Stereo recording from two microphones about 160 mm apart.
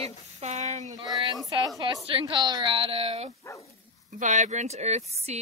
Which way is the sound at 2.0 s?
35° right (ahead or behind).